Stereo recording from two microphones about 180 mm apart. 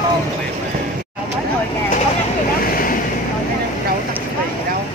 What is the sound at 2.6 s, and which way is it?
Vehicle, 55° left (ahead or behind).